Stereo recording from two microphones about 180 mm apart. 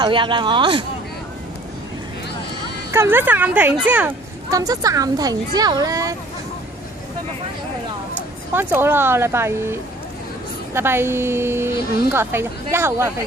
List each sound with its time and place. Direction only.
0.0 s speech: 25° right (ahead or behind)
2.9 s a woman's voice: 10° right (ahead or behind)
4.5 s speech: 20° right (ahead or behind)
8.5 s a woman's voice: 10° right (ahead or behind)